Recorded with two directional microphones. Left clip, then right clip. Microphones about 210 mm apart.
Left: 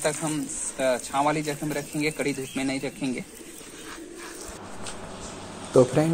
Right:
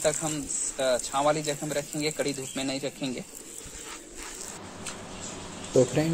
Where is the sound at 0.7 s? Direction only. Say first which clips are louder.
Left 2 dB; 50° right (ahead or behind).